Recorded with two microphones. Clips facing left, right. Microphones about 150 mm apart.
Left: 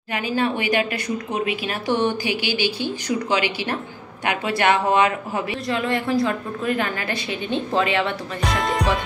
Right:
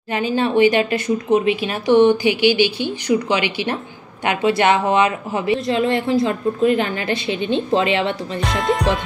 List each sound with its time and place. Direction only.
0.1 s speech: 25° right (ahead or behind)
8.4 s speech: centre (ahead or behind)